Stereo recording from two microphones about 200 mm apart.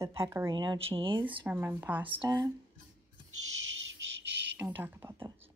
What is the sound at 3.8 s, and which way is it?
Bird, 65° right (ahead or behind).